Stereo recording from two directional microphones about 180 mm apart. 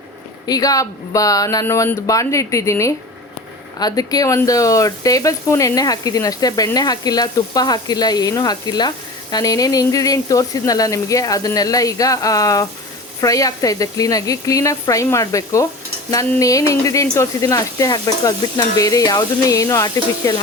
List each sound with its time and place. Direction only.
0.4 s speech: 20° left (ahead or behind)